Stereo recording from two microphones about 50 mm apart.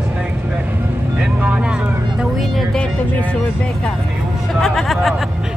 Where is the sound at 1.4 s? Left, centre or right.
Right.